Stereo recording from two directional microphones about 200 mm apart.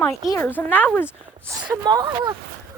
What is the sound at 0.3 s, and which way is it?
Speech, 10° left (ahead or behind).